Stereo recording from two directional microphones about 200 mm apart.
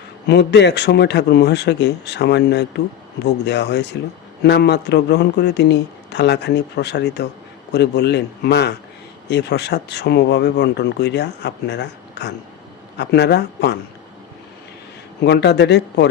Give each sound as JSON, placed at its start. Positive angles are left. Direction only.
{"t": 0.3, "sound": "speech", "side_deg": 60}
{"t": 15.2, "sound": "speech", "side_deg": 55}